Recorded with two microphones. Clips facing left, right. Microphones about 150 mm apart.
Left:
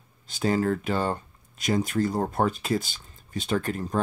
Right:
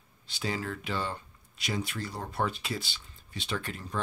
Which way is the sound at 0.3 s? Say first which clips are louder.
Left 10 dB; 45° left (ahead or behind).